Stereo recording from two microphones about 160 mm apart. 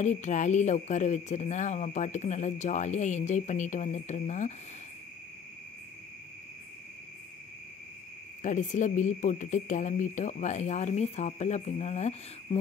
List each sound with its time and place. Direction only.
0.0 s speech: 50° left (ahead or behind)
8.4 s speech: 50° left (ahead or behind)